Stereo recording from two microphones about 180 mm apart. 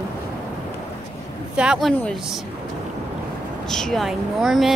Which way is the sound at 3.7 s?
Centre (ahead or behind).